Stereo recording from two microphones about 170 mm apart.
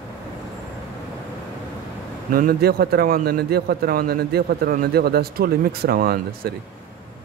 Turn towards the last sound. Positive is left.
turn(degrees=-60)  # may be behind; listen again after turning